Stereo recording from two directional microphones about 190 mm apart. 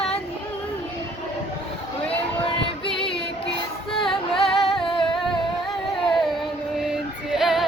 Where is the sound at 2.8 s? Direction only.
30° left (ahead or behind).